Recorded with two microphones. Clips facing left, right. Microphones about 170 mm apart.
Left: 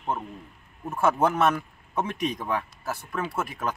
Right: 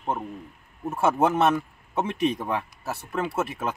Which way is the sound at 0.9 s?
25° right (ahead or behind).